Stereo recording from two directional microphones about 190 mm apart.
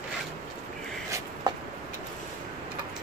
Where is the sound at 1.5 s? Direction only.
20° right (ahead or behind).